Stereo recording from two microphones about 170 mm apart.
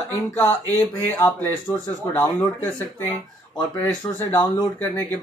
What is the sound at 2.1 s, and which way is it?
Speech, 10° left (ahead or behind).